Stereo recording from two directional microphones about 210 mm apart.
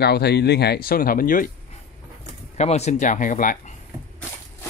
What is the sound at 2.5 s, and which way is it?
Speech, 30° left (ahead or behind).